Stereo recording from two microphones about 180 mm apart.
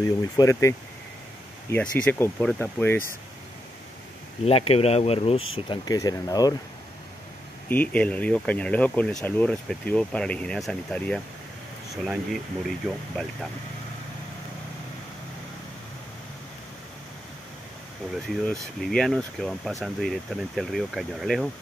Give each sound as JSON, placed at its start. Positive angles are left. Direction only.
{"t": 0.4, "sound": "speech", "side_deg": 15}
{"t": 4.5, "sound": "speech", "side_deg": 35}
{"t": 7.6, "sound": "speech", "side_deg": 10}
{"t": 18.1, "sound": "speech", "side_deg": 0}